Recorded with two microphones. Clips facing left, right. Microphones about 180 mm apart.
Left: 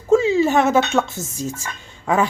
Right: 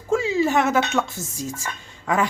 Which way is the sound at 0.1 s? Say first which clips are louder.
Left 5 dB; 25° left (ahead or behind).